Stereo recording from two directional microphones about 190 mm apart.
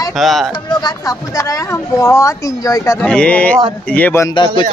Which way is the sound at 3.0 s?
5° left (ahead or behind).